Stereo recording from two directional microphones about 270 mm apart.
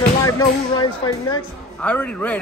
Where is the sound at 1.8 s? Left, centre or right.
Centre.